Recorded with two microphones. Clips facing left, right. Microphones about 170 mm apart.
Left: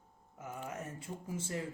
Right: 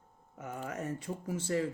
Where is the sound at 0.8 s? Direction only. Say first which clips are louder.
Right 7 dB; 70° right (ahead or behind).